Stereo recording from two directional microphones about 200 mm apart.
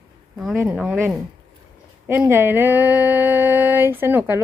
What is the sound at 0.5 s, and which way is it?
Speech, 10° right (ahead or behind).